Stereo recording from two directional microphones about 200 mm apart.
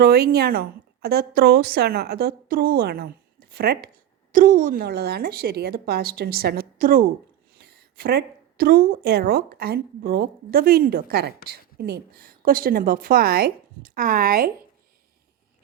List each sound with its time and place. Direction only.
0.0 s a woman's voice: 50° right (ahead or behind)
4.3 s a woman's voice: 40° right (ahead or behind)